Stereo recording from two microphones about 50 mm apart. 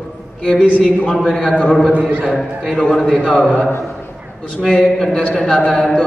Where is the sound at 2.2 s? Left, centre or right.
Centre.